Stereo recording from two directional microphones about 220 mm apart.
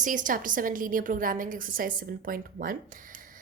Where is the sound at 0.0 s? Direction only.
35° right (ahead or behind).